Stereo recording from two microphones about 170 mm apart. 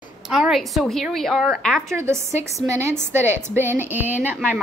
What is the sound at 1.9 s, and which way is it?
A woman's voice, 15° right (ahead or behind).